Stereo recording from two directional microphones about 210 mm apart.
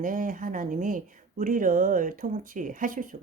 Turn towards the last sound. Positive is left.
turn(degrees=-40)  # may be behind; listen again after turning